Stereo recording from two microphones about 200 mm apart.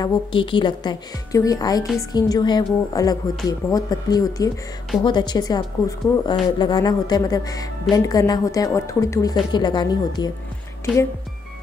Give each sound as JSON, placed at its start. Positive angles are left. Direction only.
{"t": 0.0, "sound": "a woman's voice", "side_deg": 20}